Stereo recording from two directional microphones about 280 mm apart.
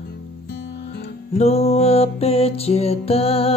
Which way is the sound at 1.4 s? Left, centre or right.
Left.